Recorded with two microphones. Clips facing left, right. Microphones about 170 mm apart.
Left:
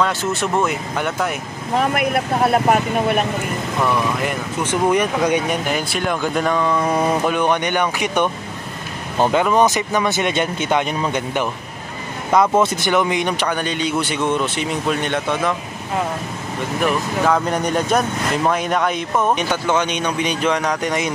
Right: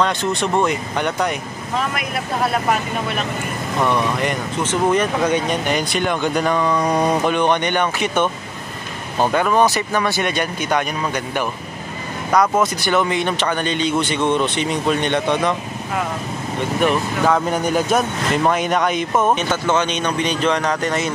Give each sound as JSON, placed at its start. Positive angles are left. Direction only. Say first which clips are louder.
{"t": 0.0, "sound": "speech", "louder": "right 1 dB", "side_deg": 5}
{"t": 1.8, "sound": "speech", "louder": "left 6 dB", "side_deg": 55}
{"t": 3.8, "sound": "speech", "louder": "right 1 dB", "side_deg": 5}
{"t": 16.8, "sound": "speech", "louder": "right 1 dB", "side_deg": 0}
{"t": 19.3, "sound": "speech", "louder": "even", "side_deg": 10}